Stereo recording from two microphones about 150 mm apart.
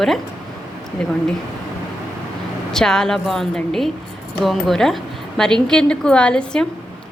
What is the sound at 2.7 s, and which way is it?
A woman's voice, 5° left (ahead or behind).